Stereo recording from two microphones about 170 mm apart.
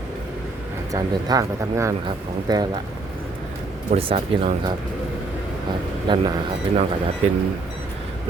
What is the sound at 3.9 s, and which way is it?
Speech, 35° right (ahead or behind).